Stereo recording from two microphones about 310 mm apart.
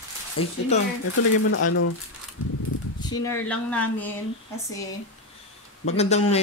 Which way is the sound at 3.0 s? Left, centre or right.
Centre.